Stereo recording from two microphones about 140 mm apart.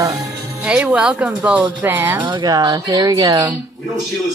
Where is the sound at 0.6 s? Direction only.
10° right (ahead or behind).